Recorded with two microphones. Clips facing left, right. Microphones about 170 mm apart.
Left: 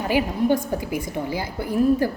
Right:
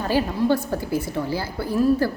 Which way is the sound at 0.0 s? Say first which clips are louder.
Even; 15° left (ahead or behind).